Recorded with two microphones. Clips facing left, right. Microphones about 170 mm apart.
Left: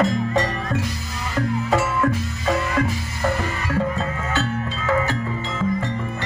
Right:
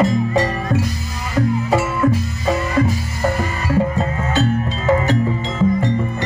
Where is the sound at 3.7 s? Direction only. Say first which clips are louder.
Right 5 dB; 15° right (ahead or behind).